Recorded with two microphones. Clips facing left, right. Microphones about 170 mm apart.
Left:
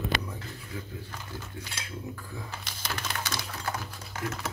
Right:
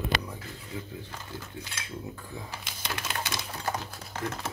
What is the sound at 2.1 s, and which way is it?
Speech, 20° right (ahead or behind).